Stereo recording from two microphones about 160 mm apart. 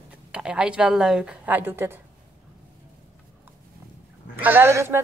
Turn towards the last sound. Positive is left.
turn(degrees=-15)  # may be behind; listen again after turning